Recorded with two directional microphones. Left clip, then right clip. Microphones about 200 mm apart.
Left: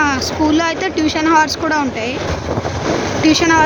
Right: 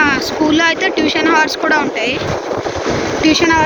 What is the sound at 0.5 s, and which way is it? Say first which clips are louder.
Speech: right 3 dB; 20° left (ahead or behind).